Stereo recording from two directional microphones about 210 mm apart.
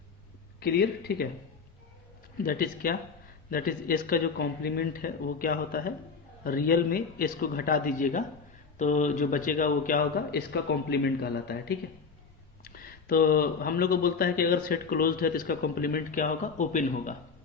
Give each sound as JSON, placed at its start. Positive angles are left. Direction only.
{"t": 0.6, "sound": "speech", "side_deg": 50}
{"t": 2.4, "sound": "speech", "side_deg": 45}
{"t": 12.6, "sound": "speech", "side_deg": 45}